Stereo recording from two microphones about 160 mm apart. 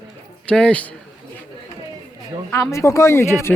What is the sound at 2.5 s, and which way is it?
Speech, 20° left (ahead or behind).